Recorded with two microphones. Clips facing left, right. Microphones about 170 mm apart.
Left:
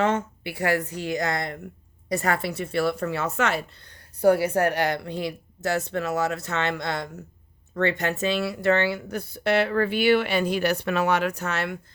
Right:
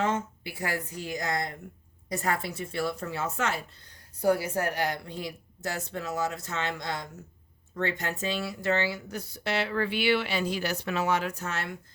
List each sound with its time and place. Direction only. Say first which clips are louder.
0.0 s speech: left 5 dB; 70° left (ahead or behind)